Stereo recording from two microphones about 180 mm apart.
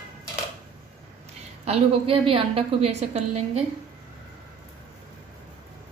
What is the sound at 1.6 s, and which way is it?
A woman's voice, 35° right (ahead or behind).